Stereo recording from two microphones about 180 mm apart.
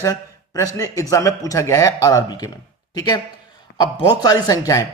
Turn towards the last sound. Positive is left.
turn(degrees=20)  # may be behind; listen again after turning